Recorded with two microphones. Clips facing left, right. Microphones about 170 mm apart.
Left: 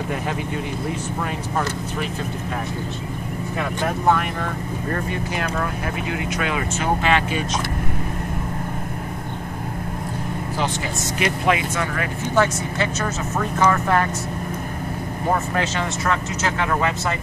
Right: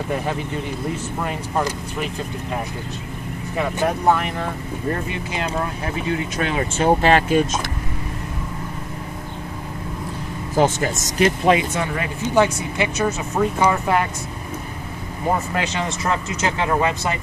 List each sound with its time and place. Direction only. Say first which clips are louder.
5.3 s speech: right 3 dB; 25° right (ahead or behind); by 7.4 s 45° right (ahead or behind)
10.5 s speech: right 9 dB; 45° right (ahead or behind)
11.4 s speech: right 3 dB; 30° right (ahead or behind)
15.3 s speech: left 2 dB; 15° right (ahead or behind)